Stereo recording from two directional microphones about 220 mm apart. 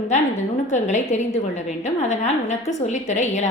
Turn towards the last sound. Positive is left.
turn(degrees=30)  # may be behind; listen again after turning